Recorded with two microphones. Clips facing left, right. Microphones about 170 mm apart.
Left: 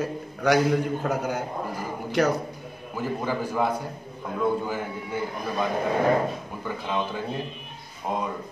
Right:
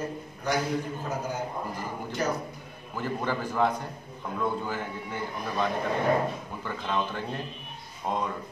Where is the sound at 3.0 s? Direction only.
10° left (ahead or behind).